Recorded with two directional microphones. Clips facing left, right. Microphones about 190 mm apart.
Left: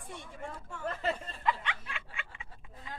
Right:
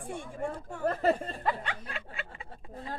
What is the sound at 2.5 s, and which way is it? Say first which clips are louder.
Speech: right 9 dB; 40° right (ahead or behind).